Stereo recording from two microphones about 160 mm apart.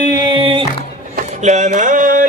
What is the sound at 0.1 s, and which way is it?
Music, 30° right (ahead or behind).